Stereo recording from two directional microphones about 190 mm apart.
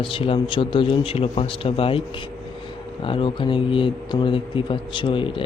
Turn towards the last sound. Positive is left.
turn(degrees=25)  # may be behind; listen again after turning